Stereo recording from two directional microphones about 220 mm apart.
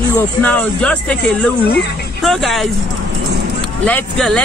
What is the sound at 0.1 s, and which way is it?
Speech, 10° left (ahead or behind).